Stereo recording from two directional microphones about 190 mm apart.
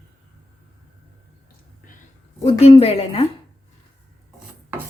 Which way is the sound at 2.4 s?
30° left (ahead or behind).